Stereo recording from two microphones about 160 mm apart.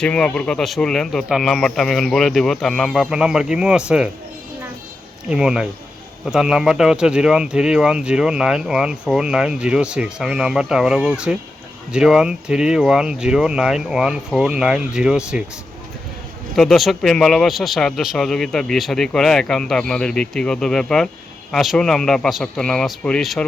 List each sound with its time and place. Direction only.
0.0 s speech: 5° left (ahead or behind)
5.3 s speech: 5° right (ahead or behind)
16.6 s speech: centre (ahead or behind)